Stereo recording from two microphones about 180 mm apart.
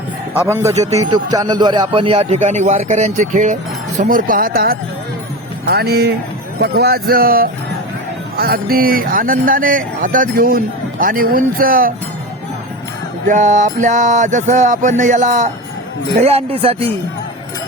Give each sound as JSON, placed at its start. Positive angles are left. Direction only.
{"t": 0.4, "sound": "a man's voice", "side_deg": -15}
{"t": 0.7, "sound": "a man's voice", "side_deg": -40}
{"t": 0.9, "sound": "a man's voice", "side_deg": -20}
{"t": 13.2, "sound": "speech", "side_deg": -45}
{"t": 16.2, "sound": "a man's voice", "side_deg": -35}